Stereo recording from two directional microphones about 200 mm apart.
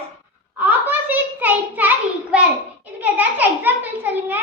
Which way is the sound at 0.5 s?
10° right (ahead or behind).